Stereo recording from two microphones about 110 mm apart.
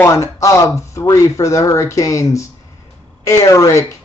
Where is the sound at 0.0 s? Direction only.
25° left (ahead or behind).